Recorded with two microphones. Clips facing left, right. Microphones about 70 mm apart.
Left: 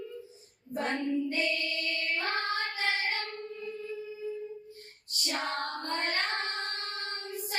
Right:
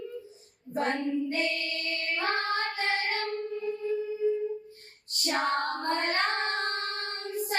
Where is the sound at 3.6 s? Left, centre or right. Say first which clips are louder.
Right 9 dB; right.